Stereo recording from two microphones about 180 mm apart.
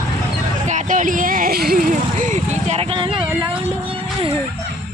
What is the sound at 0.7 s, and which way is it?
Vehicle, 45° right (ahead or behind).